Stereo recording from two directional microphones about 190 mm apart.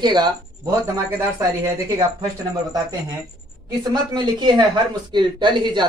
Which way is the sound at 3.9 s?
20° right (ahead or behind).